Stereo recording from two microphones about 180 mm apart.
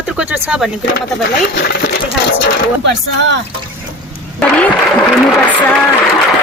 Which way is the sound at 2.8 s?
85° right.